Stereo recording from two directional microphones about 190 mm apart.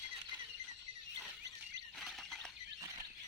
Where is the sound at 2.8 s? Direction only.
20° right (ahead or behind).